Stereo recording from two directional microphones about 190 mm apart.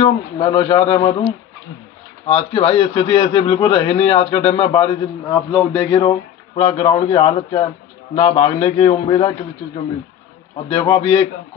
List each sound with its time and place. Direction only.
0.0 s a man's voice: 25° left (ahead or behind)
2.2 s a man's voice: 30° left (ahead or behind)
10.7 s a man's voice: 30° left (ahead or behind)